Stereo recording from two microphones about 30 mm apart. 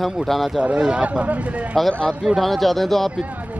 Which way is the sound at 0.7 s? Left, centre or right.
Right.